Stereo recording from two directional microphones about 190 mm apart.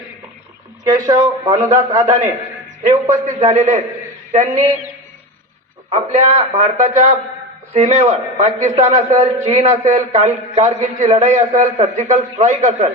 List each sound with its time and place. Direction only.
0.9 s a man's voice: 20° right (ahead or behind)
3.2 s a man's voice: 40° right (ahead or behind)
5.9 s a man's voice: 35° right (ahead or behind)